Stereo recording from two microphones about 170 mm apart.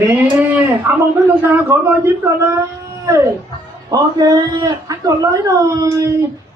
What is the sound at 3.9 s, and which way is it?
A man's voice, 25° right (ahead or behind).